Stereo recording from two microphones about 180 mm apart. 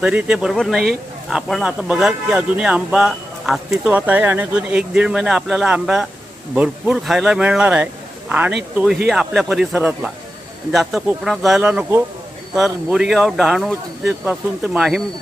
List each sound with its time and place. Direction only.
0.0 s speech: 5° right (ahead or behind)